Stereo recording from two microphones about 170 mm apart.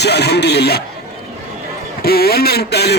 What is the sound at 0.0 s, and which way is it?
Speech, 80° left.